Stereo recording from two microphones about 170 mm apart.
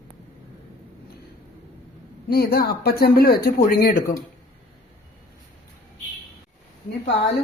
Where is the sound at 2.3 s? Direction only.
65° left (ahead or behind).